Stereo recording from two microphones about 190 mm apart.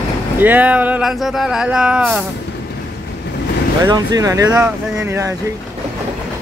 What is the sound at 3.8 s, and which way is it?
Speech, 20° right (ahead or behind).